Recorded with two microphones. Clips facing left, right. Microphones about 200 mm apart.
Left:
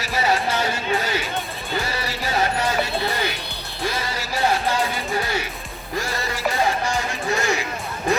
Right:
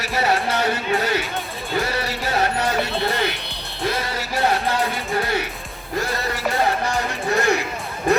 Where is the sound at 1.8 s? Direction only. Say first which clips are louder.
Right 3 dB; 60° right (ahead or behind).